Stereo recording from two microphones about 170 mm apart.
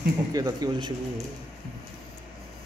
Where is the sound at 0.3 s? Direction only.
20° right (ahead or behind).